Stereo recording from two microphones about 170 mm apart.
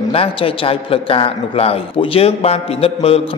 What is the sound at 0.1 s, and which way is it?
A man's voice, 35° left (ahead or behind).